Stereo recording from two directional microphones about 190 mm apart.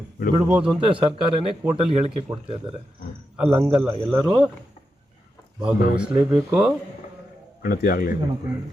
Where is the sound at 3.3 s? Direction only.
10° right (ahead or behind).